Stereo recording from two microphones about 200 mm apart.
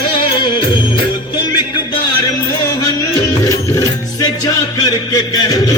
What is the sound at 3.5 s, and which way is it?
Music, 15° left (ahead or behind).